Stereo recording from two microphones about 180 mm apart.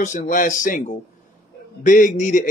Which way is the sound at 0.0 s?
45° left (ahead or behind).